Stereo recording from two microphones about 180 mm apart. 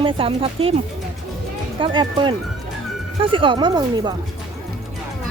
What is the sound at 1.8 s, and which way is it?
Speech, 25° right (ahead or behind).